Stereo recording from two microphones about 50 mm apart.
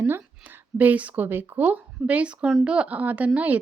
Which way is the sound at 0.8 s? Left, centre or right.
Right.